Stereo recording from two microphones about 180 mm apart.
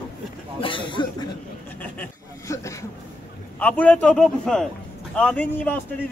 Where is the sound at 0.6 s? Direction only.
30° left (ahead or behind).